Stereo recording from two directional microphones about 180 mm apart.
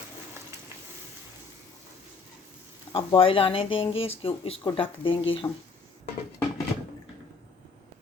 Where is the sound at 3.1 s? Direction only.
30° left (ahead or behind).